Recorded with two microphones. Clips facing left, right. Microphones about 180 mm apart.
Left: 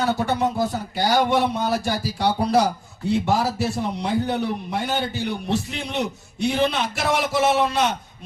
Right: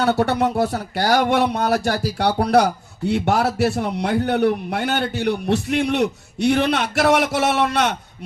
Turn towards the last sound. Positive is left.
turn(degrees=-70)  # may be behind; listen again after turning